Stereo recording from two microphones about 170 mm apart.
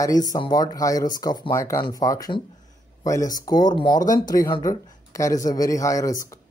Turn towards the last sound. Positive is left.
turn(degrees=20)  # may be behind; listen again after turning